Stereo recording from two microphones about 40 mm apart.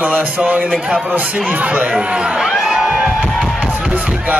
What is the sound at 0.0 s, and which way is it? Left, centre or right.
Speech, right.